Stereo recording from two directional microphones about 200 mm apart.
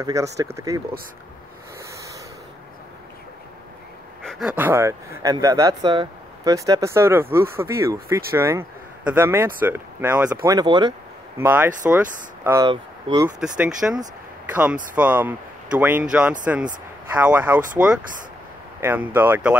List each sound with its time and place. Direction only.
0.0 s speech: 15° right (ahead or behind)
4.3 s speech: 5° right (ahead or behind)
12.6 s speech: 20° right (ahead or behind)
13.8 s speech: 5° right (ahead or behind)